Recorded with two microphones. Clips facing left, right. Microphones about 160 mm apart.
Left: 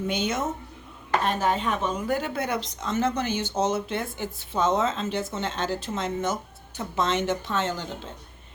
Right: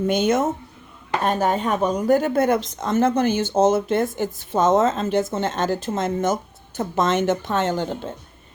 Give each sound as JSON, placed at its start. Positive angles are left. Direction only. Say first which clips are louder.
{"t": 0.1, "sound": "speech", "louder": "right 9 dB", "side_deg": -50}